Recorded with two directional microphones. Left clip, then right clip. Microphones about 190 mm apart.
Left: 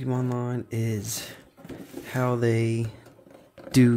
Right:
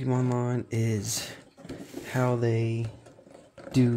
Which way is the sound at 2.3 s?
20° left (ahead or behind).